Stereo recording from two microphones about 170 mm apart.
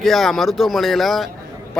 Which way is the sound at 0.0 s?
Centre (ahead or behind).